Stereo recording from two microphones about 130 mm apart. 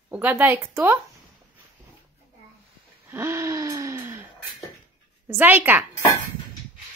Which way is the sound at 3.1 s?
20° right (ahead or behind).